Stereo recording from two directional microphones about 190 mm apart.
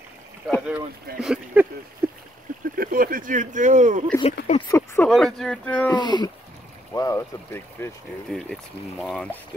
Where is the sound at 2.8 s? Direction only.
50° right (ahead or behind).